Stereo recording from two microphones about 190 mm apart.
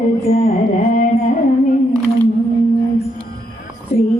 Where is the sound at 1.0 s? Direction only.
45° left (ahead or behind).